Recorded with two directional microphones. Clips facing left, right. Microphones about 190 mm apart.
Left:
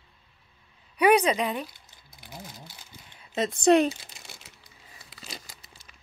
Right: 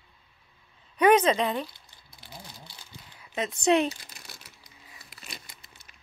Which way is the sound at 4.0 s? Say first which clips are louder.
Left 1 dB; 25° left (ahead or behind).